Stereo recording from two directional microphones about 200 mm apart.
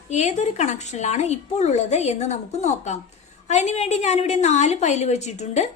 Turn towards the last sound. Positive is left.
turn(degrees=35)  # may be behind; listen again after turning